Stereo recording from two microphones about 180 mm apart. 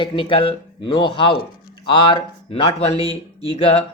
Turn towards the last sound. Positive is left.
turn(degrees=30)  # may be behind; listen again after turning